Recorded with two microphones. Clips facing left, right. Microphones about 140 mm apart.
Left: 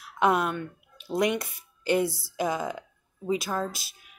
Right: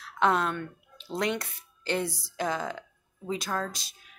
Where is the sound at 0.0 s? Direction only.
10° left (ahead or behind).